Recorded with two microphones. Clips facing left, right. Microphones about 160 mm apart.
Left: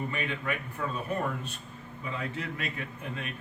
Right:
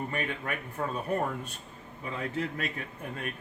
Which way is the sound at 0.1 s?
45° right (ahead or behind).